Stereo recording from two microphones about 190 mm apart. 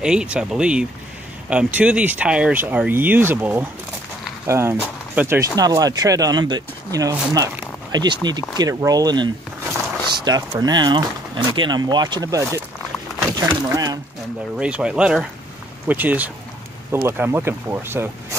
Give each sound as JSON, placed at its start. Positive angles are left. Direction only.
{"t": 0.0, "sound": "speech", "side_deg": -5}
{"t": 14.6, "sound": "speech", "side_deg": -5}